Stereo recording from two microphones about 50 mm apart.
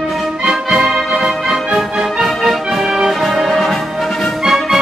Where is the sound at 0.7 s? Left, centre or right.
Centre.